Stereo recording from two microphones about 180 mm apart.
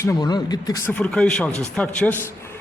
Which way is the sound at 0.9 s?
5° left (ahead or behind).